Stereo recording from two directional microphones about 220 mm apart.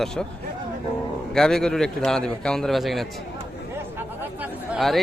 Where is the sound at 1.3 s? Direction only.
Centre (ahead or behind).